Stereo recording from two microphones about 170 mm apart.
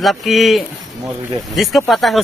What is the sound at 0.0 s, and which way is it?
Speech, centre (ahead or behind).